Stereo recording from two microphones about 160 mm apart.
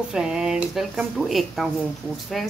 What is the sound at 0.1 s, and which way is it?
A woman's voice, 5° right (ahead or behind).